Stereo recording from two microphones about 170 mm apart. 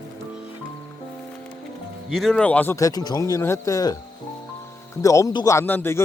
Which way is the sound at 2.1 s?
Centre (ahead or behind).